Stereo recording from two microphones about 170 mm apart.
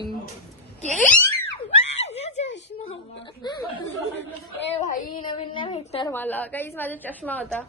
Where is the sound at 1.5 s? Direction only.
40° left (ahead or behind).